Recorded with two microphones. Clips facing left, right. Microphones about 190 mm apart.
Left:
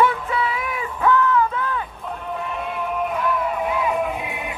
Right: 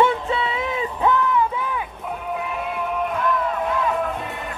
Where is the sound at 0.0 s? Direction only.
25° right (ahead or behind).